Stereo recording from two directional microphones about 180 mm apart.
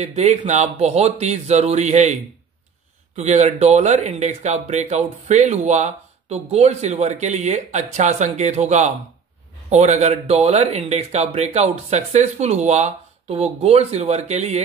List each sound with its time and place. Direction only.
0.0 s speech: 40° right (ahead or behind)
3.2 s speech: 40° right (ahead or behind)